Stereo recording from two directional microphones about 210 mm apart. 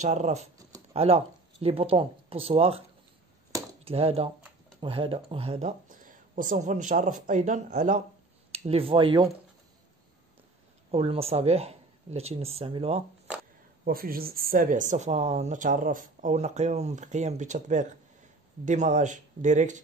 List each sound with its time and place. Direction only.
0.0 s a woman's voice: 35° right (ahead or behind)
3.8 s a woman's voice: 30° right (ahead or behind)
10.9 s speech: 25° right (ahead or behind)
13.8 s a woman's voice: 45° right (ahead or behind)